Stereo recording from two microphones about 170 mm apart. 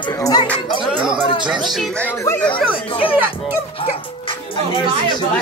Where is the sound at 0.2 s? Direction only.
25° left (ahead or behind).